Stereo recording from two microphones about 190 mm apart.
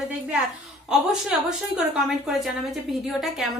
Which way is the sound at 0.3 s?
5° right (ahead or behind).